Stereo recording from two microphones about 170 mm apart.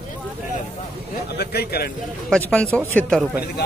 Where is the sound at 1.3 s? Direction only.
65° left (ahead or behind).